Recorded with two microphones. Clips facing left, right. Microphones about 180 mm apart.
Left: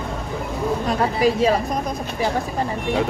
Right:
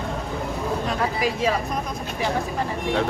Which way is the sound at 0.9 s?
30° left (ahead or behind).